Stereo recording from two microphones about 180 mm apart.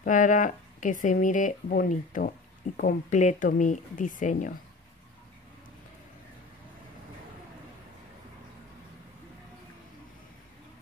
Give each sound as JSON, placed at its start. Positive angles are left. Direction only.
{"t": 0.0, "sound": "speech", "side_deg": 45}